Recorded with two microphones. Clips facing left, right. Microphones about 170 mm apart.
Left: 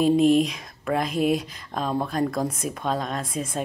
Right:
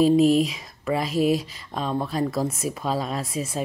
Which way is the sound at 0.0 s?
Centre (ahead or behind).